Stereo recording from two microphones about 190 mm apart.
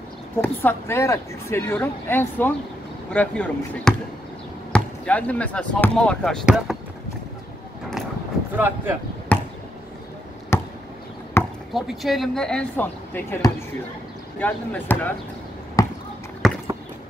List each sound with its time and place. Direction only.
0.4 s speech: 10° left (ahead or behind)
8.5 s speech: 10° right (ahead or behind)
10.5 s chop: 15° left (ahead or behind)
11.4 s basketball bounce: 10° left (ahead or behind)
11.7 s speech: centre (ahead or behind)
15.8 s basketball bounce: 15° left (ahead or behind)
16.4 s a sound: centre (ahead or behind)